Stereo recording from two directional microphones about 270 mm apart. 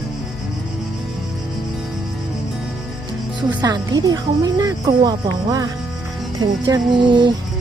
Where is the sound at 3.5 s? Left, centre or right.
Centre.